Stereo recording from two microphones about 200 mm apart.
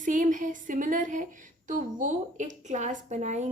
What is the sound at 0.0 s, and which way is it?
A woman's voice, 40° right (ahead or behind).